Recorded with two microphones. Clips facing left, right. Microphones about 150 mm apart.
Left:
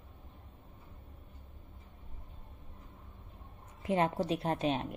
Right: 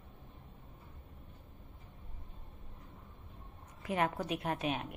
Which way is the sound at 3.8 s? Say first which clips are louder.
Left 3 dB; 25° left (ahead or behind).